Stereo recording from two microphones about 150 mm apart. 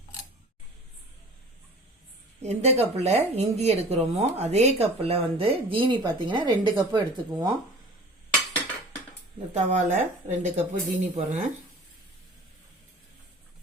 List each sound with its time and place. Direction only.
2.4 s a woman's voice: 45° right (ahead or behind); by 7.5 s 30° right (ahead or behind)
9.6 s a woman's voice: 50° right (ahead or behind)